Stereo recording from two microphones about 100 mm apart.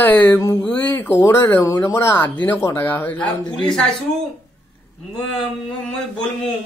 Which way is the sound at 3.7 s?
5° left (ahead or behind).